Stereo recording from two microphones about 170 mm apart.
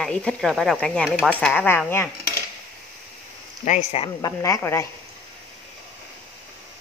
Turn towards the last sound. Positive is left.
turn(degrees=15)  # may be behind; listen again after turning